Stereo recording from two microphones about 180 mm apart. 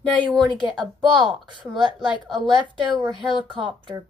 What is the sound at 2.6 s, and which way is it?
Speech, 25° right (ahead or behind).